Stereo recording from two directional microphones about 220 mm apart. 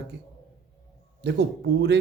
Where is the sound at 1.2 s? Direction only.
50° right (ahead or behind).